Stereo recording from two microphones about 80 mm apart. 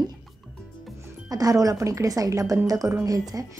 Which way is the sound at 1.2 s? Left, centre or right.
Right.